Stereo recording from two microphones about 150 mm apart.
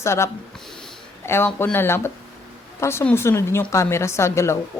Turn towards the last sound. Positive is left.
turn(degrees=20)  # may be behind; listen again after turning